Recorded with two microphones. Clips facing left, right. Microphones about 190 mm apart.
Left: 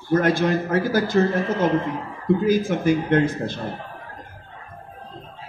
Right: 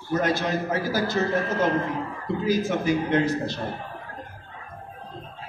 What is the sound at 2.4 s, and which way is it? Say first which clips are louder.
A man's voice: left 1 dB; 50° left (ahead or behind).